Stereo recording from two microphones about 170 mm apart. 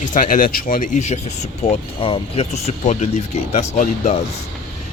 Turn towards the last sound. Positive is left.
turn(degrees=40)  # may be behind; listen again after turning